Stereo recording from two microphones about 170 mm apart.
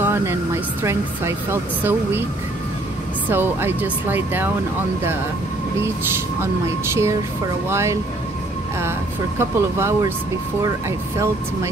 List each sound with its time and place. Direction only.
0.0 s speech: 15° right (ahead or behind)
3.3 s speech: 10° right (ahead or behind)
5.8 s speech: 15° right (ahead or behind)
9.4 s speech: 15° right (ahead or behind)